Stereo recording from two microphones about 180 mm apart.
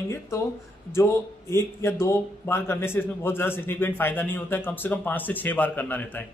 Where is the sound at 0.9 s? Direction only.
15° left (ahead or behind).